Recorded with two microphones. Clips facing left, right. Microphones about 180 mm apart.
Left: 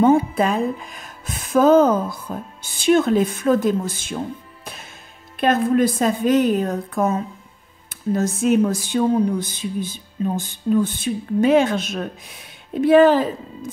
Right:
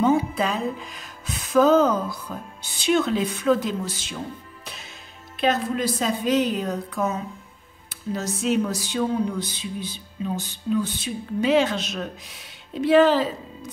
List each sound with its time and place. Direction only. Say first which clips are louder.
0.0 s speech: left 5 dB; 50° left (ahead or behind)
5.4 s speech: left 6 dB; 50° left (ahead or behind)